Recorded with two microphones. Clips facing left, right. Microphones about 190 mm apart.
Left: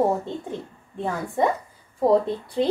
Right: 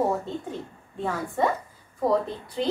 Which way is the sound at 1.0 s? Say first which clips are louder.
Left 2 dB; 20° left (ahead or behind).